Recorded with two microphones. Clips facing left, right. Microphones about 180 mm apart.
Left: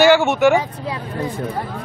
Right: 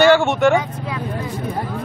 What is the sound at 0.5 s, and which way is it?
Speech, 30° left (ahead or behind).